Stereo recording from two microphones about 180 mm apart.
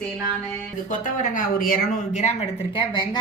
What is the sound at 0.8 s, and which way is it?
A woman's voice, 50° left (ahead or behind).